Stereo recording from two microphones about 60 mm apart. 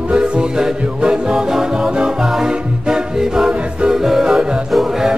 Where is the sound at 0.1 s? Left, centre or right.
Centre.